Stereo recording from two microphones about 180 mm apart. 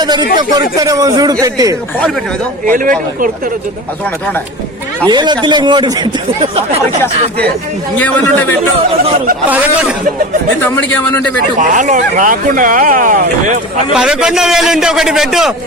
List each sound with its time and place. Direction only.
0.0 s a man's voice: 25° right (ahead or behind)
2.6 s speech: 50° right (ahead or behind)
5.0 s speech: 25° right (ahead or behind)
7.9 s speech: 10° left (ahead or behind)
10.6 s speech: 10° left (ahead or behind)
11.6 s speech: 45° right (ahead or behind)
13.9 s a man's voice: 5° right (ahead or behind)